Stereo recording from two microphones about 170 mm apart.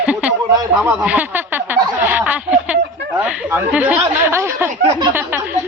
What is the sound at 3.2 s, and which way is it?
Speech, 10° right (ahead or behind).